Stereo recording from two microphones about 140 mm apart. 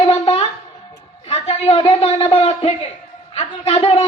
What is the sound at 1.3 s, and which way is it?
A man's voice, 50° left (ahead or behind).